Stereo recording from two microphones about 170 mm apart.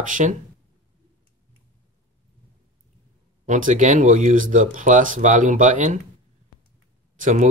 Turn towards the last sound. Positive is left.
turn(degrees=-45)  # may be behind; listen again after turning